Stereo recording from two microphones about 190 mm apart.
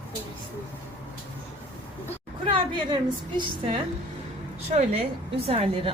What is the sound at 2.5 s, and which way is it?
A woman's voice, 25° right (ahead or behind).